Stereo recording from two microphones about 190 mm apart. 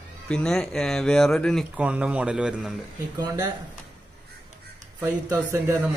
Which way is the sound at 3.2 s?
20° right (ahead or behind).